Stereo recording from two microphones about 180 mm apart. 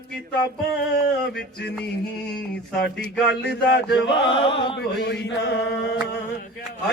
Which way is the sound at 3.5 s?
65° left (ahead or behind).